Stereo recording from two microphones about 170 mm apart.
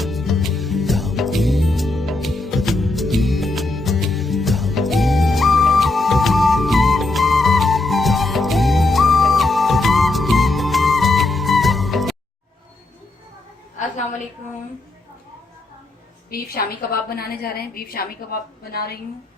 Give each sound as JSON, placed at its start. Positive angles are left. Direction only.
{"t": 0.0, "sound": "music", "side_deg": 0}
{"t": 16.3, "sound": "a woman's voice", "side_deg": 60}